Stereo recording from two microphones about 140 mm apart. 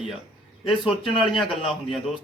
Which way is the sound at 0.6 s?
40° left (ahead or behind).